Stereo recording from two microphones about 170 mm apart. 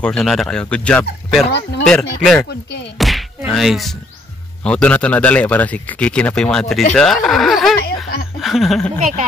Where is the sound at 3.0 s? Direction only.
Centre (ahead or behind).